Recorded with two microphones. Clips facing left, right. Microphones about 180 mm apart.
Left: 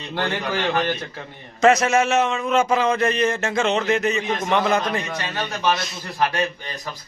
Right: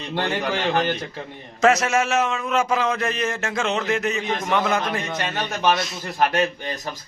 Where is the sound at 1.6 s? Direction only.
Centre (ahead or behind).